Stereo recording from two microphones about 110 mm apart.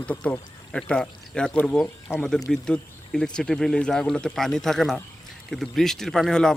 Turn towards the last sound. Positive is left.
turn(degrees=5)  # may be behind; listen again after turning